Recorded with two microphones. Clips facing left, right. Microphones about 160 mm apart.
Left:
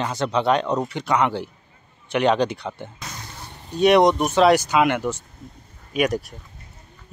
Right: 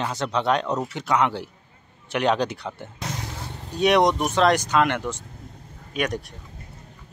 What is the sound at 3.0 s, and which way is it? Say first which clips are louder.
Vehicle: right 5 dB; 85° right.